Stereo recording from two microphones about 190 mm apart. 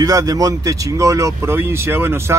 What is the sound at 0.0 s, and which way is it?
Speech, 20° right (ahead or behind).